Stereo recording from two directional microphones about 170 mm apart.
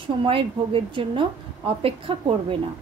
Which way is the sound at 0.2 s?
30° right (ahead or behind).